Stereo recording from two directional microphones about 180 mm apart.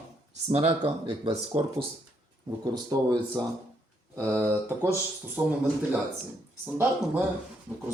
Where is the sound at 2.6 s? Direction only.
20° right (ahead or behind).